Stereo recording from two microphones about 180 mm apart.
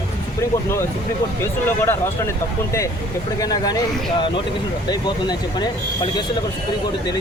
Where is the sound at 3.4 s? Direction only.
20° left (ahead or behind).